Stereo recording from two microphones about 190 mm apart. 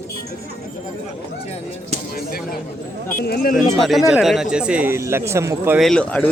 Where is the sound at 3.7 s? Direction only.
Centre (ahead or behind).